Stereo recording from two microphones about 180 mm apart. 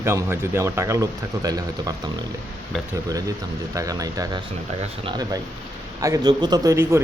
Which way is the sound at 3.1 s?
20° right (ahead or behind).